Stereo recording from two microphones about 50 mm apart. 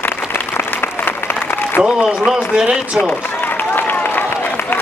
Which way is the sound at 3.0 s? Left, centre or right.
Left.